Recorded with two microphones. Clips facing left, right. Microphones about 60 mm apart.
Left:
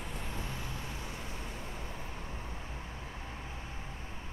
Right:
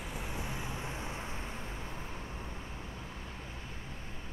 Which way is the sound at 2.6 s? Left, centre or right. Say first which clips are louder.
Even; left.